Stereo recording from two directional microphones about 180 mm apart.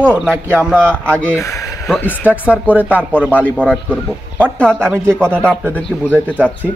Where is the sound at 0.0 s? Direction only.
10° right (ahead or behind).